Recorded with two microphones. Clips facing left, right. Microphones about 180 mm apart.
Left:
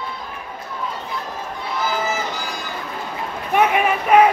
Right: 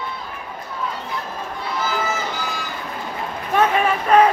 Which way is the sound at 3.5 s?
15° left (ahead or behind).